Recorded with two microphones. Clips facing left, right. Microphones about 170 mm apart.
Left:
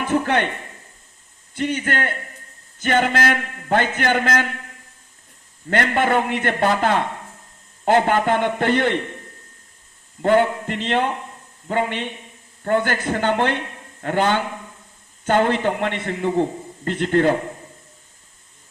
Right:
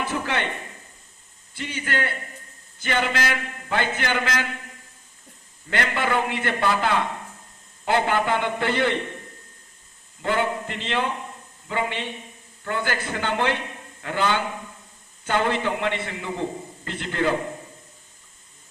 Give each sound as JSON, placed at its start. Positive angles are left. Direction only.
{"t": 0.0, "sound": "speech", "side_deg": 50}
{"t": 1.5, "sound": "a man's voice", "side_deg": 50}
{"t": 5.7, "sound": "a man's voice", "side_deg": 50}
{"t": 10.2, "sound": "a man's voice", "side_deg": 50}